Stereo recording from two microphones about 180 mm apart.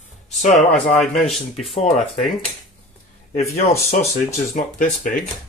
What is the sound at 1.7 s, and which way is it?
Speech, 35° left (ahead or behind).